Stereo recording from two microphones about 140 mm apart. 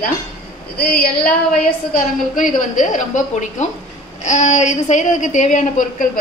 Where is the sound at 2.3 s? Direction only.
65° left (ahead or behind).